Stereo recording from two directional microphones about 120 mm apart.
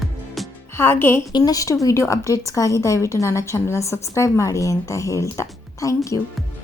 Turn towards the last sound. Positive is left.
turn(degrees=25)  # may be behind; listen again after turning